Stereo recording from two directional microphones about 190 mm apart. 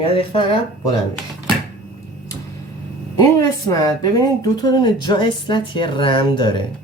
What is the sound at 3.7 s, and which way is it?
Speech, 20° left (ahead or behind).